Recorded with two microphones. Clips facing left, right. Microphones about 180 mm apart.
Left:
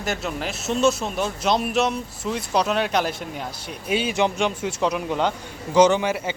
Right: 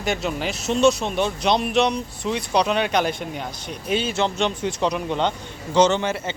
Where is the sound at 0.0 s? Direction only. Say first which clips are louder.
Right 3 dB; centre (ahead or behind).